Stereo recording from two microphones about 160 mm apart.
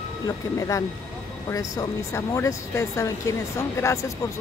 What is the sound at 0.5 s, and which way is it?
Speech, 20° left (ahead or behind).